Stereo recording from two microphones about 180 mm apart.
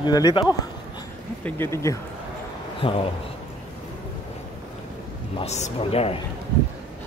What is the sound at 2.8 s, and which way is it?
Speech, 30° left (ahead or behind).